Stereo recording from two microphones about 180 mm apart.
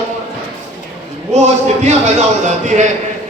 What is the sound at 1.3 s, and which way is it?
Speech, 40° right (ahead or behind).